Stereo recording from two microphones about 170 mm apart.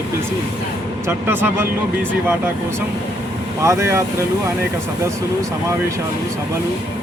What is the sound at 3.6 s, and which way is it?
Speech, 15° right (ahead or behind).